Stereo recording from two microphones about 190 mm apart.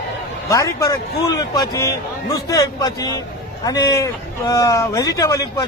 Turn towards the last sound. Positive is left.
turn(degrees=20)  # may be behind; listen again after turning